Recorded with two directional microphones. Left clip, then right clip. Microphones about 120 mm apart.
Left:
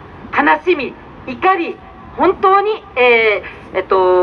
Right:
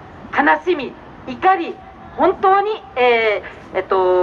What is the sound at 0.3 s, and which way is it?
A woman's voice, 25° left (ahead or behind).